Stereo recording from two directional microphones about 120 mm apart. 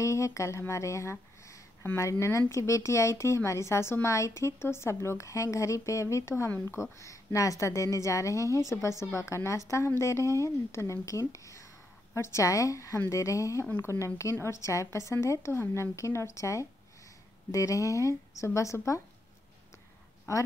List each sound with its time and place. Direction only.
0.0 s speech: 25° left (ahead or behind)